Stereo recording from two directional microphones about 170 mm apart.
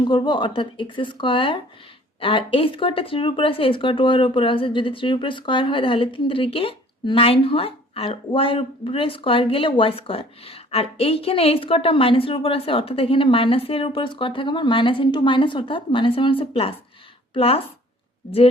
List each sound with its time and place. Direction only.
0.0 s speech: 25° left (ahead or behind)